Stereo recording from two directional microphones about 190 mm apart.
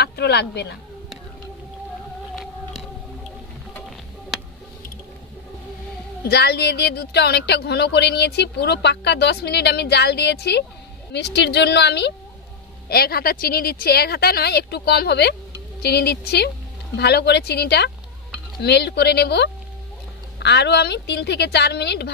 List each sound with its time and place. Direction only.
0.0 s speech: 60° left (ahead or behind)
2.3 s music: centre (ahead or behind)
6.2 s a woman's voice: 60° left (ahead or behind)